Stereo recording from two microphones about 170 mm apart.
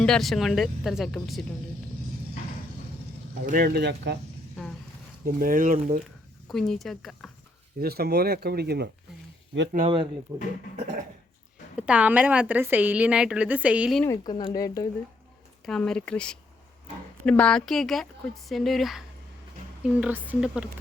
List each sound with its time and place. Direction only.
0.0 s speech: centre (ahead or behind)
3.4 s speech: 55° right (ahead or behind); by 4.2 s 70° right (ahead or behind)
5.2 s speech: 55° right (ahead or behind)
6.5 s speech: centre (ahead or behind)
7.8 s speech: 65° right (ahead or behind)
10.3 s speech: 20° right (ahead or behind)
11.8 s a woman's voice: 5° right (ahead or behind)
14.0 s speech: 20° left (ahead or behind)
15.6 s speech: 5° left (ahead or behind)